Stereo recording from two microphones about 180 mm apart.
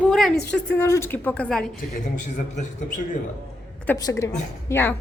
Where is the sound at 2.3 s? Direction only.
40° left (ahead or behind).